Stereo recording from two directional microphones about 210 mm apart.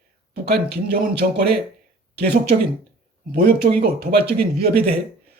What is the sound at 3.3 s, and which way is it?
Speech, 50° right (ahead or behind).